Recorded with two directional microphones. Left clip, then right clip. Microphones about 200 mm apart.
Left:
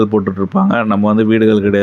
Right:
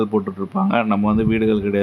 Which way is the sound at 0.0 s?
20° left (ahead or behind).